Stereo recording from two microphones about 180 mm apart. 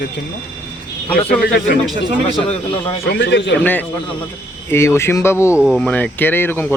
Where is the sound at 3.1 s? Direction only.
80° left.